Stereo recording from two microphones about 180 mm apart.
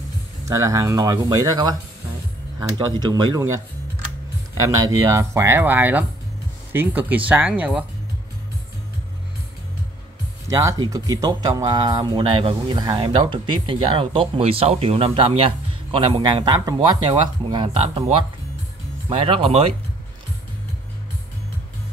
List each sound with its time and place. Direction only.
0.5 s speech: 20° right (ahead or behind)
2.9 s speech: 25° right (ahead or behind)
4.8 s speech: 15° right (ahead or behind)
10.5 s speech: 20° right (ahead or behind)
17.8 s speech: 35° right (ahead or behind)